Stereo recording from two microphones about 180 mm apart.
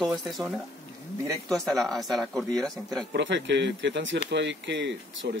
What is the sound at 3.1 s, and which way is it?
Speech, 75° right (ahead or behind).